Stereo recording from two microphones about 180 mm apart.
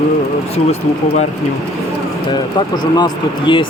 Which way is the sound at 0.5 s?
35° left (ahead or behind).